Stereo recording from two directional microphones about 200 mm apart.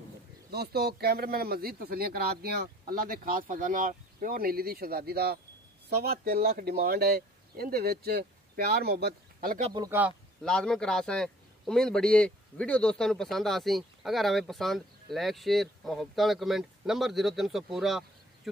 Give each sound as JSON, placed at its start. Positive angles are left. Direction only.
{"t": 0.5, "sound": "speech", "side_deg": -50}
{"t": 9.7, "sound": "speech", "side_deg": -20}
{"t": 10.4, "sound": "a man's voice", "side_deg": 5}